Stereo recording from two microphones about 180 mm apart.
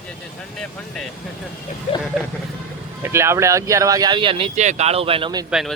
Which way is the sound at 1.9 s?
35° left (ahead or behind).